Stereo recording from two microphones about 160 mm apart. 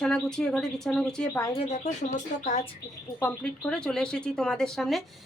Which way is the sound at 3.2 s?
10° left (ahead or behind).